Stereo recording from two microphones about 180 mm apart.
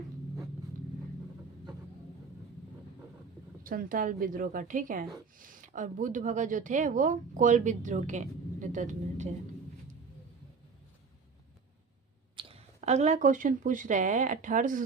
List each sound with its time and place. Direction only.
3.6 s a woman's voice: 50° right (ahead or behind)
12.4 s speech: 35° right (ahead or behind)